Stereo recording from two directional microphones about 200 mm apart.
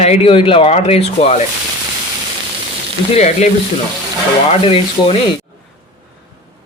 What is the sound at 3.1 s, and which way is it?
Speech, 35° left (ahead or behind).